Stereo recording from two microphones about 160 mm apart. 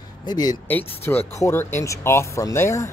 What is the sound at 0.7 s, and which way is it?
Speech, 10° left (ahead or behind).